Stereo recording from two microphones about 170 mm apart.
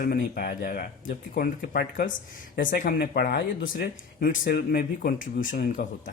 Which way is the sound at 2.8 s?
60° left (ahead or behind).